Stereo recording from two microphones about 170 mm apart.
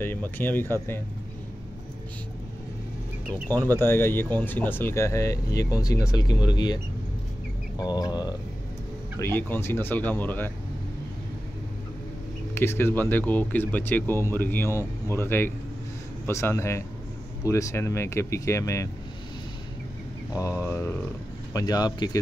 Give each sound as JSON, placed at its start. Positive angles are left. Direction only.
{"t": 0.0, "sound": "speech", "side_deg": 10}
{"t": 3.6, "sound": "speech", "side_deg": 15}
{"t": 7.7, "sound": "a sound", "side_deg": 25}
{"t": 9.2, "sound": "speech", "side_deg": 10}
{"t": 12.5, "sound": "speech", "side_deg": 15}
{"t": 20.6, "sound": "speech", "side_deg": 15}
{"t": 21.5, "sound": "a sound", "side_deg": 20}